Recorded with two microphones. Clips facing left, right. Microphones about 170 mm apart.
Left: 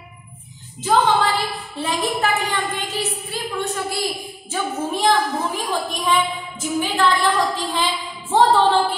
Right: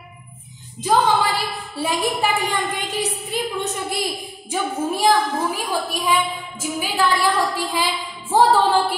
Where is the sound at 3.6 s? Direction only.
20° right (ahead or behind).